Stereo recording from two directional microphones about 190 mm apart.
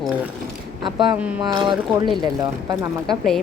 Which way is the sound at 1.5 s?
25° right (ahead or behind).